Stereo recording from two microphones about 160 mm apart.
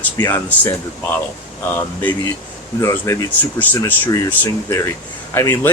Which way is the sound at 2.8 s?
20° left (ahead or behind).